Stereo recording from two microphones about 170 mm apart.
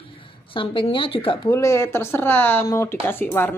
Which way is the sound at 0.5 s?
30° left (ahead or behind).